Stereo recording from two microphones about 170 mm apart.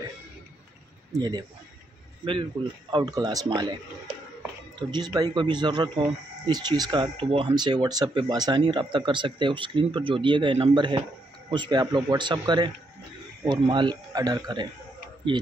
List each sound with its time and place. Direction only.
1.1 s speech: 25° right (ahead or behind)
2.9 s speech: 25° right (ahead or behind)
4.7 s speech: 25° right (ahead or behind)